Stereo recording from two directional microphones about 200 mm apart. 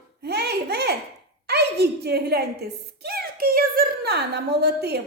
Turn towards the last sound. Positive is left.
turn(degrees=-55)  # may be behind; listen again after turning